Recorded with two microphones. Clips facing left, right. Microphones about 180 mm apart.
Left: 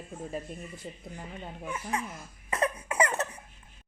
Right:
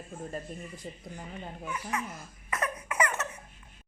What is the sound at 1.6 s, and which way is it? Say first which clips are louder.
Speech: left 1 dB; 30° left (ahead or behind).